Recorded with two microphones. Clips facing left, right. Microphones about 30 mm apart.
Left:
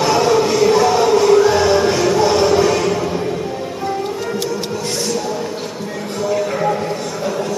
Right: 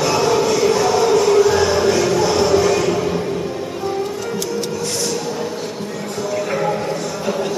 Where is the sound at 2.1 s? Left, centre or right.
Centre.